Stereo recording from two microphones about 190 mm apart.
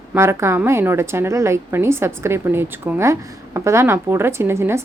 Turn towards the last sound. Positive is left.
turn(degrees=-15)  # may be behind; listen again after turning